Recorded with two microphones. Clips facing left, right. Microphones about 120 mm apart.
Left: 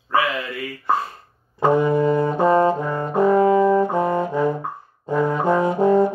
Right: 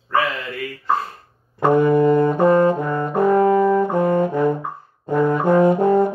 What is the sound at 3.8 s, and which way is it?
Saxophone, 55° right (ahead or behind).